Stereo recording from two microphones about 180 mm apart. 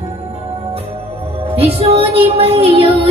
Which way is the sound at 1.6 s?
35° right (ahead or behind).